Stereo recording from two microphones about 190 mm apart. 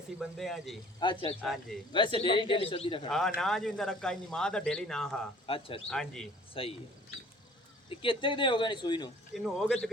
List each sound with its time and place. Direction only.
0.2 s speech: centre (ahead or behind)
0.9 s speech: 25° left (ahead or behind)
1.4 s speech: centre (ahead or behind)
1.9 s speech: 25° left (ahead or behind)
3.1 s speech: 5° left (ahead or behind)
5.5 s speech: 30° left (ahead or behind)
5.9 s speech: 5° left (ahead or behind)
6.5 s speech: 30° left (ahead or behind)
7.9 s speech: 25° left (ahead or behind)
9.3 s speech: centre (ahead or behind)